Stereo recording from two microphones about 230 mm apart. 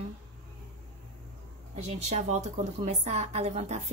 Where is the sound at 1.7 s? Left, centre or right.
Right.